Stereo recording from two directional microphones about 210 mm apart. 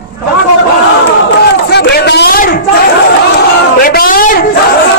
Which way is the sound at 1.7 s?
50° left (ahead or behind).